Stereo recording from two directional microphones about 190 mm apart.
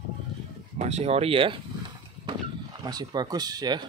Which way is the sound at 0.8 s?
35° right (ahead or behind).